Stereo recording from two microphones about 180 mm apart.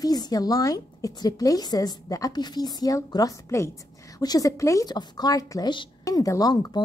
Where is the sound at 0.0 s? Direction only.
20° left (ahead or behind).